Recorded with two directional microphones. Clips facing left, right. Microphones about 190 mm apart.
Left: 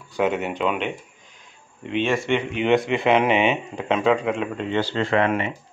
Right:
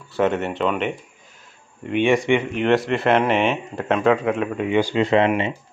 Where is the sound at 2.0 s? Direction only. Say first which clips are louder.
Right 5 dB; 15° right (ahead or behind).